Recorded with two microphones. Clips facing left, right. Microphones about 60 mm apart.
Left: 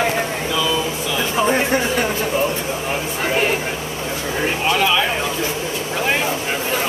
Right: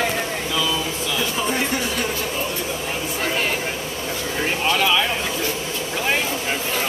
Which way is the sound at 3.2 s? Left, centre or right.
Centre.